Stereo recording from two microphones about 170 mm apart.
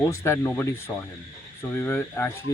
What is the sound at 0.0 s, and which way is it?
Speech, 15° left (ahead or behind).